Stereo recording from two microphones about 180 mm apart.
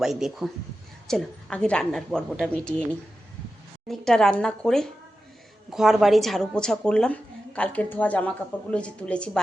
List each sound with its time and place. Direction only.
0.0 s a woman's voice: centre (ahead or behind)
3.8 s a woman's voice: 5° left (ahead or behind)